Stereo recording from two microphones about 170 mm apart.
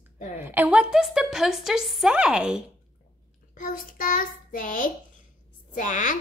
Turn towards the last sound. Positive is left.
turn(degrees=50)  # may be behind; listen again after turning